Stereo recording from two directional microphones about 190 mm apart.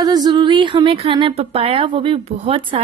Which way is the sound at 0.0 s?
20° right (ahead or behind).